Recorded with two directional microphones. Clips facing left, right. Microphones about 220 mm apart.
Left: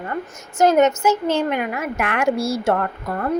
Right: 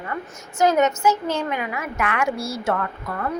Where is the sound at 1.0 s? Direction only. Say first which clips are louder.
Left 3 dB; 25° left (ahead or behind).